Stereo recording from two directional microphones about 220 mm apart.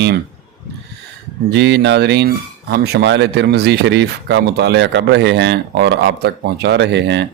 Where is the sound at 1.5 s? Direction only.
50° right (ahead or behind).